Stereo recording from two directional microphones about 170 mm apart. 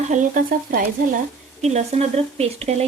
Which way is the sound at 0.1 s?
50° right (ahead or behind).